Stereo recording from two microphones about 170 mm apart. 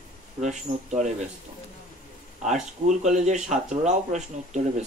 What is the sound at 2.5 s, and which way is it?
Speech, 45° right (ahead or behind).